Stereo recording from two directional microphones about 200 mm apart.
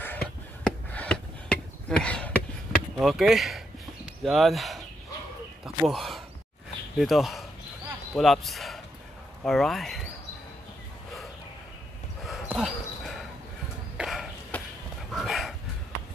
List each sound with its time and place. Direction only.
0.0 s a sound: 10° left (ahead or behind)
3.0 s speech: centre (ahead or behind)
5.9 s speech: centre (ahead or behind)
12.3 s dog: 5° right (ahead or behind)
13.9 s a sound: centre (ahead or behind)
15.0 s dog: centre (ahead or behind)